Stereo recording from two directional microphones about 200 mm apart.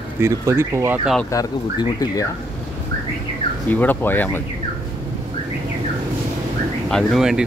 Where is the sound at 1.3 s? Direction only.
15° left (ahead or behind).